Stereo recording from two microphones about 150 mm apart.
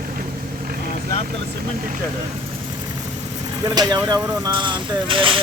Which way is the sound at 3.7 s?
25° right (ahead or behind).